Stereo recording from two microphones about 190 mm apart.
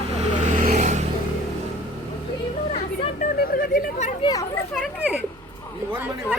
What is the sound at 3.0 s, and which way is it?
Speech, 45° left (ahead or behind).